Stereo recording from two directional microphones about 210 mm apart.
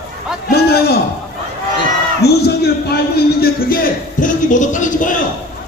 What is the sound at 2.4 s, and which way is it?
A man's voice, 50° left (ahead or behind).